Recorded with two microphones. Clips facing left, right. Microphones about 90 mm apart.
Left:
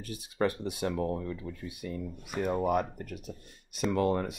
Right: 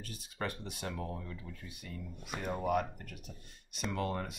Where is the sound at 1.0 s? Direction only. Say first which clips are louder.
Left 10 dB; 40° left (ahead or behind).